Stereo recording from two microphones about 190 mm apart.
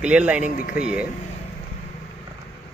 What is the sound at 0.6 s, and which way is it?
Speech, 50° left (ahead or behind).